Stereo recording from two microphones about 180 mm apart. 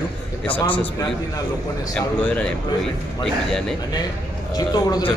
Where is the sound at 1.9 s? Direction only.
10° left (ahead or behind).